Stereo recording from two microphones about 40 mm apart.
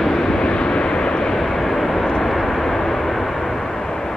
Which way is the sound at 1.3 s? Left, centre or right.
Centre.